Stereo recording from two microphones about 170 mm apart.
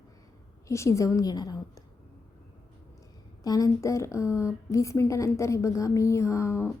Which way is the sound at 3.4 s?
20° left (ahead or behind).